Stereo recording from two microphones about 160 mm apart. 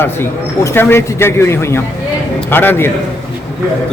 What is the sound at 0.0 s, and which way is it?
Speech, 15° left (ahead or behind).